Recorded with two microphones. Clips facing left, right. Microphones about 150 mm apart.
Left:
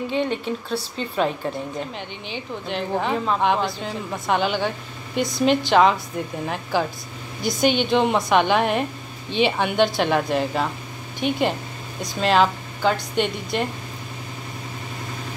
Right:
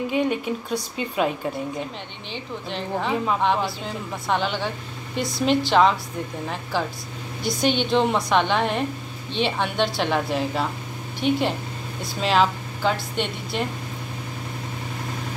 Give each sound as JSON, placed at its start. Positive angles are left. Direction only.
{"t": 0.1, "sound": "speech", "side_deg": -10}
{"t": 2.2, "sound": "a woman's voice", "side_deg": 5}